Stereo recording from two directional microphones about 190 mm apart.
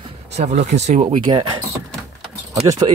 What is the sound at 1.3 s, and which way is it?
Speech, 20° right (ahead or behind).